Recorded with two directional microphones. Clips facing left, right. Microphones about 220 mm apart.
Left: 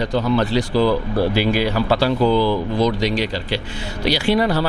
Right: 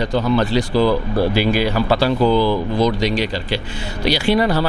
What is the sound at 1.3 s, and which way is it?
Speech, 15° right (ahead or behind).